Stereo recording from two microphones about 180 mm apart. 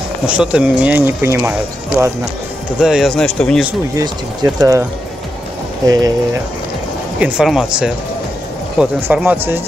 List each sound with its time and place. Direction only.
0.3 s speech: 5° right (ahead or behind)
2.8 s speech: centre (ahead or behind)
3.9 s speech: 20° right (ahead or behind)
5.9 s speech: 20° right (ahead or behind)
7.2 s speech: 5° right (ahead or behind)